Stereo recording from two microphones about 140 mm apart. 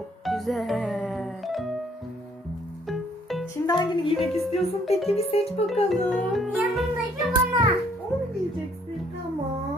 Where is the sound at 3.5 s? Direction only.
30° left (ahead or behind).